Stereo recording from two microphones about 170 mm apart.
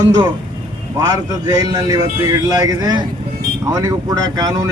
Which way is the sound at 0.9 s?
25° right (ahead or behind).